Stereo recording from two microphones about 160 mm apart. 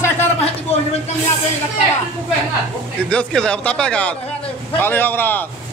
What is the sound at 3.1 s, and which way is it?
Speech, 5° left (ahead or behind).